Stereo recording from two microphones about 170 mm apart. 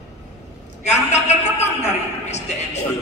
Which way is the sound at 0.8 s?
40° left (ahead or behind).